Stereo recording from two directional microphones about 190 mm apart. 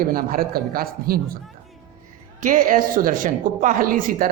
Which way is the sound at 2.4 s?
45° right (ahead or behind).